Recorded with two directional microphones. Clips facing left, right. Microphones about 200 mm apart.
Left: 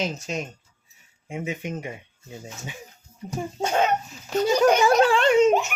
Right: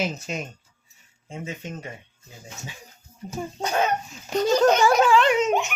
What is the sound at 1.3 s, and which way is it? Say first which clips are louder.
Speech: left 4 dB; 15° left (ahead or behind).